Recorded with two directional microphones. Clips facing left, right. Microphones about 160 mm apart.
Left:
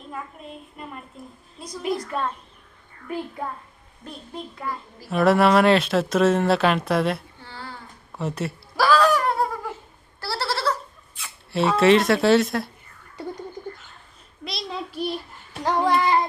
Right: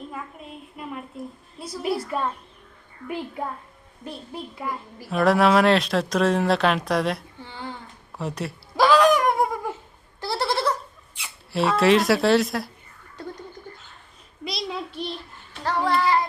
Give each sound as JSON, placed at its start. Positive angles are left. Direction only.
{"t": 0.1, "sound": "a sound", "side_deg": -5}
{"t": 1.5, "sound": "speech", "side_deg": -5}
{"t": 4.5, "sound": "a child's voice", "side_deg": -10}
{"t": 5.0, "sound": "speech", "side_deg": 0}
{"t": 7.4, "sound": "a sound", "side_deg": -15}
{"t": 8.1, "sound": "speech", "side_deg": 0}
{"t": 8.7, "sound": "a sound", "side_deg": -20}
{"t": 10.2, "sound": "goat", "side_deg": -15}
{"t": 11.5, "sound": "speech", "side_deg": 0}
{"t": 14.4, "sound": "speech", "side_deg": 0}
{"t": 15.6, "sound": "child singing", "side_deg": 15}